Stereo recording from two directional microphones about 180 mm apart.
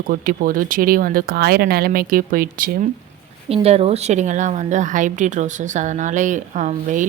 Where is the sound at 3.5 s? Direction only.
35° right (ahead or behind).